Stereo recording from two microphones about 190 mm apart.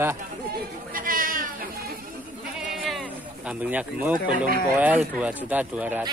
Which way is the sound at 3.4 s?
10° right (ahead or behind).